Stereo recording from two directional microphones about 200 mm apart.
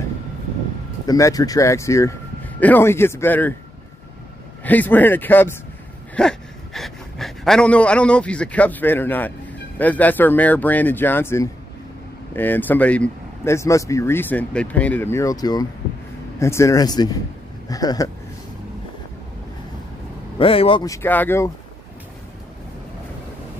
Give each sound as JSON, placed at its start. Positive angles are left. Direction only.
{"t": 1.0, "sound": "speech", "side_deg": 15}
{"t": 4.6, "sound": "speech", "side_deg": 10}
{"t": 20.3, "sound": "speech", "side_deg": 30}
{"t": 20.8, "sound": "speech", "side_deg": 15}